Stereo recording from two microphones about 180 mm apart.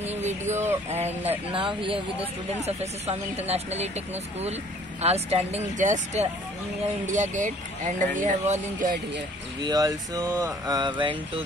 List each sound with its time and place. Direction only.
0.0 s a sound: 40° right (ahead or behind)
0.8 s speech: 35° right (ahead or behind)
9.6 s speech: 20° right (ahead or behind)